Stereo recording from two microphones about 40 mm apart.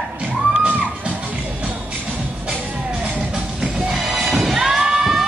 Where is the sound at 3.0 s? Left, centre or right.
Right.